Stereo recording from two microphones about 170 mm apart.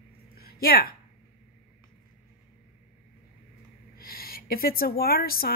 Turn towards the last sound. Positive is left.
turn(degrees=60)  # may be behind; listen again after turning